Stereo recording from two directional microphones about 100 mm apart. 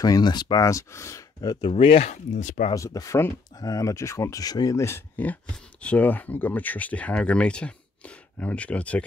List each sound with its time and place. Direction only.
0.0 s speech: 40° left (ahead or behind)
1.7 s speech: 70° left (ahead or behind)
2.7 s speech: 35° left (ahead or behind); by 9.0 s 15° left (ahead or behind)